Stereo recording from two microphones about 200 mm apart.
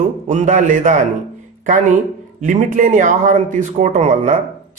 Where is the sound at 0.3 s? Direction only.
40° right (ahead or behind).